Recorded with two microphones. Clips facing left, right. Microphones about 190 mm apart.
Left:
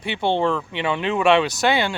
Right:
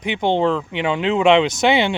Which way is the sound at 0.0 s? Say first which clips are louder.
Right 3 dB; 15° right (ahead or behind).